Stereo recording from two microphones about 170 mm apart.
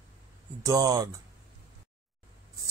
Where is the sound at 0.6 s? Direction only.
20° right (ahead or behind).